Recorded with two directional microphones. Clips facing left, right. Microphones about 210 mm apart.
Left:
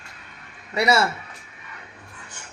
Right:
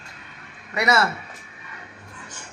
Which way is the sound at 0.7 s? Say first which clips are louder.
Left 1 dB; 30° left (ahead or behind).